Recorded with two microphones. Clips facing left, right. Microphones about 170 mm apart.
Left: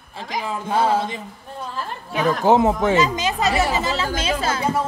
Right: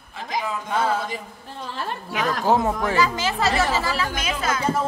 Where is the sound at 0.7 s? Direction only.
30° left (ahead or behind).